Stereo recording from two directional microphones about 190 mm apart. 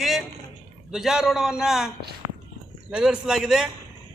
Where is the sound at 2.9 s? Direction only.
5° right (ahead or behind).